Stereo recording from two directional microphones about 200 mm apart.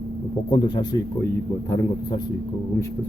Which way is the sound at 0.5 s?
20° left (ahead or behind).